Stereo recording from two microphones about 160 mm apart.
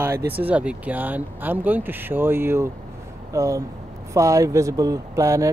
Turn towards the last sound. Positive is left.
turn(degrees=-20)  # may be behind; listen again after turning